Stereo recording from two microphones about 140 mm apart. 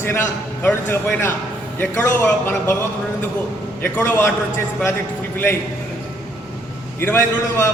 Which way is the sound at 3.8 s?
15° left (ahead or behind).